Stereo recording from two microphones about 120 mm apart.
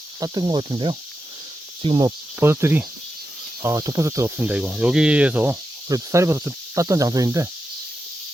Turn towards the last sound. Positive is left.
turn(degrees=-30)  # may be behind; listen again after turning